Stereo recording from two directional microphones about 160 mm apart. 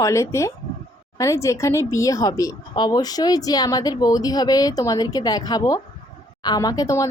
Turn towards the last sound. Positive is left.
turn(degrees=20)  # may be behind; listen again after turning